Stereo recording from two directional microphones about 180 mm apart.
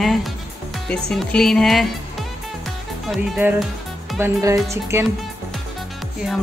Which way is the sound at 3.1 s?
5° right (ahead or behind).